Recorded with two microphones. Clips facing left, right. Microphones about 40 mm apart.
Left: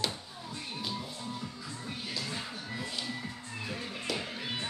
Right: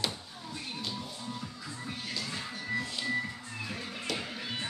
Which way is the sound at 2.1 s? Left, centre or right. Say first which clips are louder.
Even; centre.